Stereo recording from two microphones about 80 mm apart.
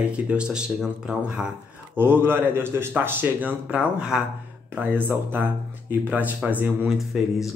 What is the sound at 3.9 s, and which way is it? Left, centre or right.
Speech, centre.